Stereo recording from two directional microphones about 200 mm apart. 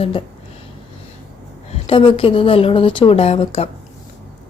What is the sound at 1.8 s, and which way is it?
Speech, 25° left (ahead or behind).